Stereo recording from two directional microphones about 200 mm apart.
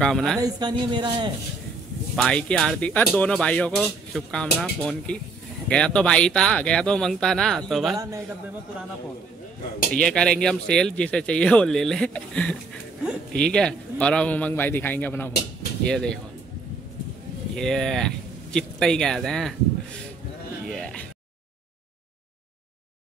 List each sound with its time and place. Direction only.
0.0 s speech: centre (ahead or behind)
0.4 s a woman's voice: 20° right (ahead or behind)
2.1 s speech: 5° left (ahead or behind)
7.9 s a man's voice: 15° right (ahead or behind)
9.9 s speech: 5° left (ahead or behind)
17.6 s speech: centre (ahead or behind)
20.6 s a sound: centre (ahead or behind)